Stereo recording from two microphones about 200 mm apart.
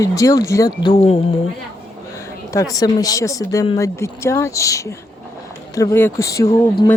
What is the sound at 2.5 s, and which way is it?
Speech, 15° left (ahead or behind).